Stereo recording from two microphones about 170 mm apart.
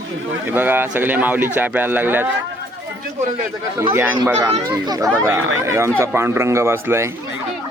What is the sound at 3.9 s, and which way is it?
Speech, 10° right (ahead or behind).